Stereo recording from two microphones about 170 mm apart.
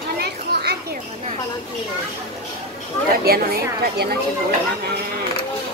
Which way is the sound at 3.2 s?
65° right (ahead or behind).